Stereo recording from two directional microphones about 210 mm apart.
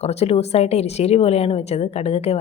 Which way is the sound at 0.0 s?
30° left (ahead or behind).